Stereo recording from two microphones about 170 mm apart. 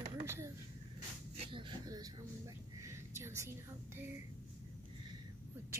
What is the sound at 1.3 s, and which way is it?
Speech, 35° right (ahead or behind).